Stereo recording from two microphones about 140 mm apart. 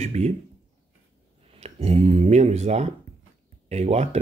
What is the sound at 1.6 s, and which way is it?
Speech, 45° right (ahead or behind).